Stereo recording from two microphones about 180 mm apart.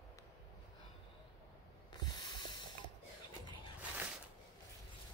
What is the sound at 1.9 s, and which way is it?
Snort, 25° left (ahead or behind).